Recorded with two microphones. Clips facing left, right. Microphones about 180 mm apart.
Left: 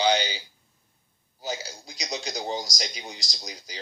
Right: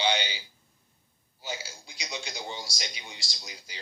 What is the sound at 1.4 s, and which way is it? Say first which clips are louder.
Speech: left 5 dB; 40° left (ahead or behind).